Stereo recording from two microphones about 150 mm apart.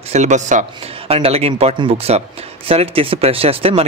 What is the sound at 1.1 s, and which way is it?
Speech, 40° right (ahead or behind).